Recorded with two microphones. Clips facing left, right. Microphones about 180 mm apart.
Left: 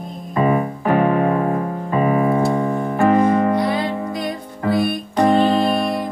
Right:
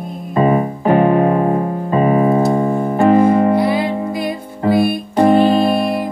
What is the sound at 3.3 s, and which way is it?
Music, 25° right (ahead or behind).